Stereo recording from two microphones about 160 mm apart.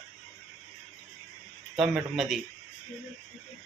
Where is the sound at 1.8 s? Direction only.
5° right (ahead or behind).